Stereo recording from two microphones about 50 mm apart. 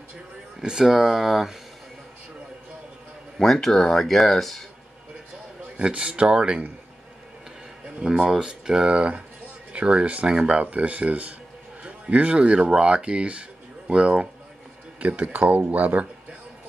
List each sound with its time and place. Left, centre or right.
0.6 s speech: centre
3.3 s speech: centre
5.8 s speech: right
8.0 s speech: centre; by 16.1 s right